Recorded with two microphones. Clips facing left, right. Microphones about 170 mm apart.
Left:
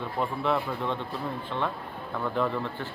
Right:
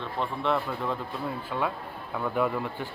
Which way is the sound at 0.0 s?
5° left (ahead or behind).